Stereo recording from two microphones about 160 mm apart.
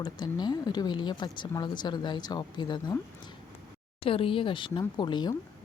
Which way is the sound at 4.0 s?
35° left (ahead or behind).